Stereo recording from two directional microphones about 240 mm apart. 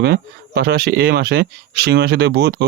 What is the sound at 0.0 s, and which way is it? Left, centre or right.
Speech, right.